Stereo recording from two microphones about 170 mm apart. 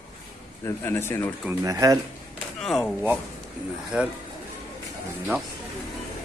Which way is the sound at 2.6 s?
5° left (ahead or behind).